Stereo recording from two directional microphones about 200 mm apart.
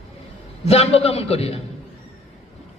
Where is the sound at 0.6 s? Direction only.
30° left (ahead or behind).